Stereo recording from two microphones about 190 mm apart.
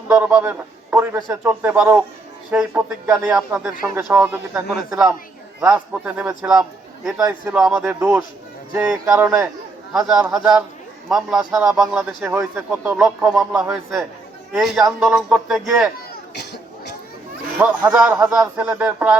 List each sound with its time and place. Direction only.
0.1 s a man's voice: 5° right (ahead or behind)
7.2 s a man's voice: 15° right (ahead or behind)
7.5 s a man's voice: 5° right (ahead or behind)
7.9 s a man's voice: 15° right (ahead or behind)
9.9 s a man's voice: centre (ahead or behind)
16.3 s cough: 60° left (ahead or behind)
17.6 s a man's voice: 10° right (ahead or behind)